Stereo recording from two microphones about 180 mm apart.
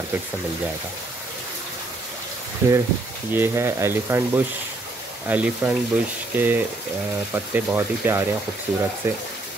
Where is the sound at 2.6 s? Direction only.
15° right (ahead or behind).